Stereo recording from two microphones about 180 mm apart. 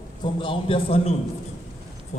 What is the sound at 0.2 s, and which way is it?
Speech, 30° left (ahead or behind).